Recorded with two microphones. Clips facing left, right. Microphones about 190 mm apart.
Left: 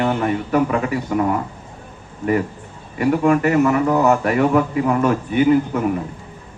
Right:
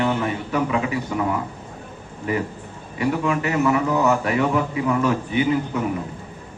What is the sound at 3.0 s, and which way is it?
A man's voice, 45° left (ahead or behind).